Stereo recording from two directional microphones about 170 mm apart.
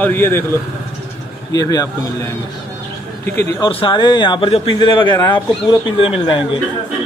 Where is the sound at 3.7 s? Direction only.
30° left (ahead or behind).